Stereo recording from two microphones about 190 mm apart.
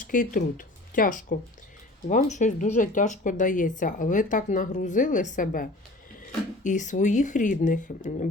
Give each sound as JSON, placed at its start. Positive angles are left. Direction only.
{"t": 0.0, "sound": "speech", "side_deg": 45}
{"t": 6.7, "sound": "speech", "side_deg": 40}